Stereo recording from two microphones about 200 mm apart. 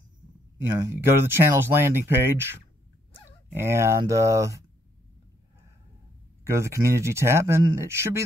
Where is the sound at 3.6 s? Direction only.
15° right (ahead or behind).